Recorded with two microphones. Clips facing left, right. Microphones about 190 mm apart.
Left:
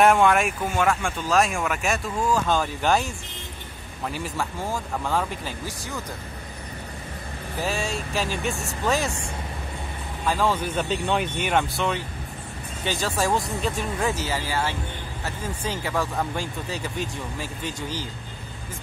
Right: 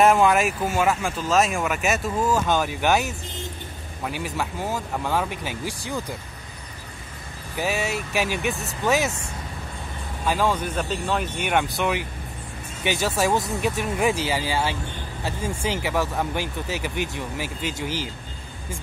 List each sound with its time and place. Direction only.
0.0 s speech: centre (ahead or behind)
4.2 s speech: 5° right (ahead or behind)
5.3 s speech: 75° right (ahead or behind)
5.7 s speech: 15° right (ahead or behind)
7.8 s speech: 70° right (ahead or behind)
8.8 s speech: 5° right (ahead or behind)
10.2 s speech: 5° right (ahead or behind)
10.5 s speech: 5° left (ahead or behind)
11.7 s speech: 15° right (ahead or behind)
13.4 s speech: 20° right (ahead or behind)
16.3 s speech: 75° right (ahead or behind)